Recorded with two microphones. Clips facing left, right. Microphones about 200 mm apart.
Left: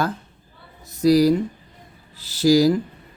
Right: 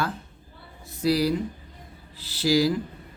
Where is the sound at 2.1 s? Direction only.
45° left (ahead or behind).